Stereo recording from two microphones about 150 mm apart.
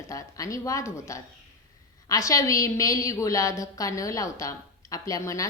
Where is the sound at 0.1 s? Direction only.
20° left (ahead or behind).